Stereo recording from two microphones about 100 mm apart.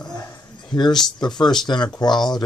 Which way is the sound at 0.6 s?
45° left (ahead or behind).